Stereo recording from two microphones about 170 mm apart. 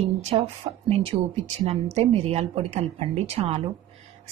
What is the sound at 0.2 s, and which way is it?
A woman's voice, 35° right (ahead or behind).